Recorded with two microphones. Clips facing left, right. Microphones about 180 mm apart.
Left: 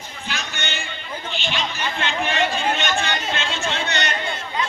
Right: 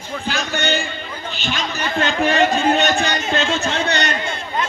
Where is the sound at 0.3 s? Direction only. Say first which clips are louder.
Right 9 dB; 35° right (ahead or behind).